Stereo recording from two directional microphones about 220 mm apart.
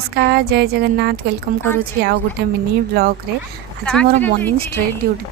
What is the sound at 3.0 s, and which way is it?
Speech, 45° right (ahead or behind).